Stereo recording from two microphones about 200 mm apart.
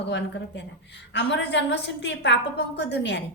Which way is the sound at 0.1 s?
60° left (ahead or behind).